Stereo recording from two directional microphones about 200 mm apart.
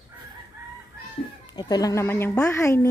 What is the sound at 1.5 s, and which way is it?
Speech, 20° left (ahead or behind).